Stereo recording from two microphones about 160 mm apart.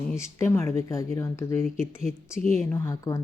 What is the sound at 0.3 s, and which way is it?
Speech, 15° left (ahead or behind).